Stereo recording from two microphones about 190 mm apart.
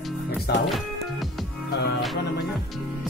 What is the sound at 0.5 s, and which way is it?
Speech, 55° left (ahead or behind).